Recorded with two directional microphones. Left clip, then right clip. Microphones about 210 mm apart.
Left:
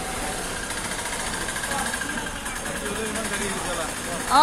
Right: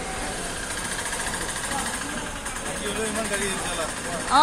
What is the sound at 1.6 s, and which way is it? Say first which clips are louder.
Sewing machine: left 2 dB; 30° left (ahead or behind).